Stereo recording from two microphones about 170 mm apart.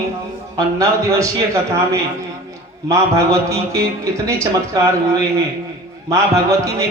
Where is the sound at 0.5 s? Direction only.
20° right (ahead or behind).